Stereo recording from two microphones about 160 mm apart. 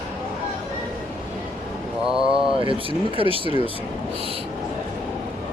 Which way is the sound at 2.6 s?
35° right (ahead or behind).